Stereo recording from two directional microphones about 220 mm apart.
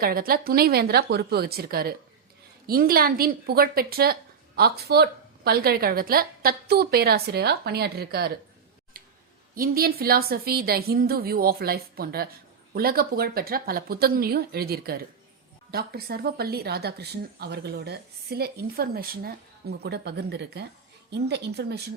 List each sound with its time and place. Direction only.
0.0 s a woman's voice: 40° right (ahead or behind)
8.9 s a sound: 40° right (ahead or behind)
9.6 s a woman's voice: 40° right (ahead or behind)